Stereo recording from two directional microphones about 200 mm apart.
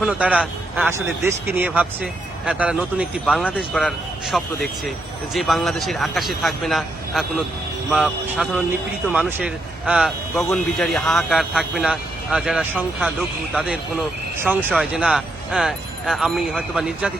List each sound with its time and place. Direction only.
0.0 s a man's voice: 5° right (ahead or behind)
14.7 s speech: centre (ahead or behind)